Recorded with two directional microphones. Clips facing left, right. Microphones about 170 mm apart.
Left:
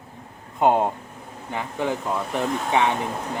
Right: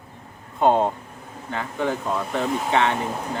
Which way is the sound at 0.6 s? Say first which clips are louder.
Right 1 dB; 15° left (ahead or behind).